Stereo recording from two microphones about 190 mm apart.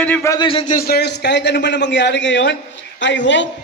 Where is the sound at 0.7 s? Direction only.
50° left (ahead or behind).